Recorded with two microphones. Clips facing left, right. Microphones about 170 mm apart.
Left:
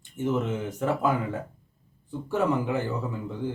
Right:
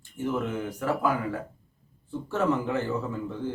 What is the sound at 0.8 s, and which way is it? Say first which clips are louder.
A man's voice: left 1 dB; 25° left (ahead or behind).